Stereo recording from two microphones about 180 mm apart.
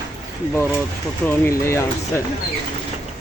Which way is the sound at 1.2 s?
15° left (ahead or behind).